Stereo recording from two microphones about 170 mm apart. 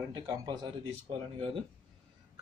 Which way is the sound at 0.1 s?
25° right (ahead or behind).